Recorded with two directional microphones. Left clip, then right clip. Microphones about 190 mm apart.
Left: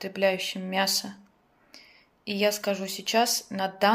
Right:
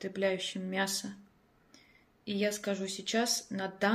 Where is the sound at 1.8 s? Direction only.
45° left (ahead or behind).